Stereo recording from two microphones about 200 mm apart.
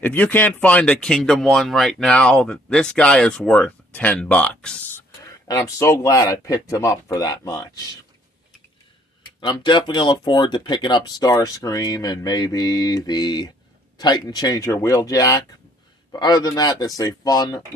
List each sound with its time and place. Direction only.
0.0 s speech: 10° left (ahead or behind)
5.2 s speech: 15° left (ahead or behind)
9.4 s speech: 25° left (ahead or behind)